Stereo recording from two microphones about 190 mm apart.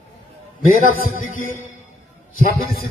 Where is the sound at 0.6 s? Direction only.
45° left (ahead or behind).